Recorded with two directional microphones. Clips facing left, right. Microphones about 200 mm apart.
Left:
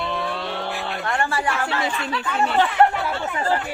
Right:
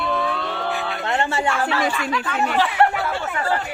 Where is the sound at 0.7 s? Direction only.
Centre (ahead or behind).